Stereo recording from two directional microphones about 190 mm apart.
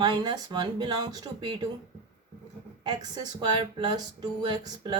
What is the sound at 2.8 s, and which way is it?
Speech, 20° right (ahead or behind).